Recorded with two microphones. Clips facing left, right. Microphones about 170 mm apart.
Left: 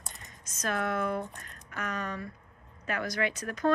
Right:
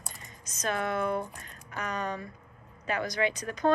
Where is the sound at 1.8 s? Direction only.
35° right (ahead or behind).